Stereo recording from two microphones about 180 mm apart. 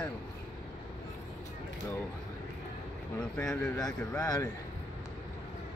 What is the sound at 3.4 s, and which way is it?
Speech, 5° left (ahead or behind).